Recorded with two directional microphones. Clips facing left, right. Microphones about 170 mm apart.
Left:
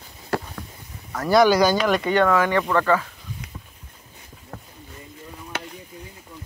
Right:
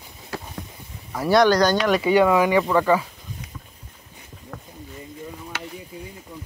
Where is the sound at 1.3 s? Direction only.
5° left (ahead or behind); by 3.0 s 10° right (ahead or behind).